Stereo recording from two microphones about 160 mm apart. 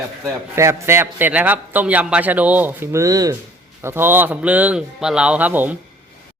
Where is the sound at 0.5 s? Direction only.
15° right (ahead or behind).